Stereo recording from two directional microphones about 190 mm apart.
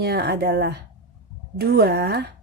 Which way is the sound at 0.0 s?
60° right (ahead or behind).